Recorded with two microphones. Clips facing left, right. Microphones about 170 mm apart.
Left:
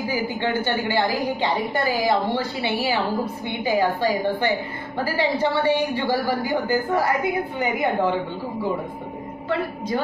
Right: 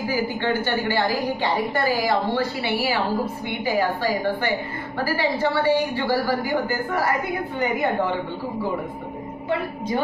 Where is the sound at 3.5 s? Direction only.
20° left (ahead or behind).